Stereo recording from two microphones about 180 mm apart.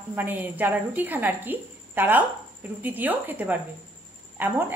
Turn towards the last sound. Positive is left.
turn(degrees=-10)  # may be behind; listen again after turning